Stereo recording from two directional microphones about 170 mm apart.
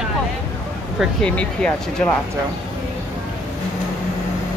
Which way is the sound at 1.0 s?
5° left (ahead or behind).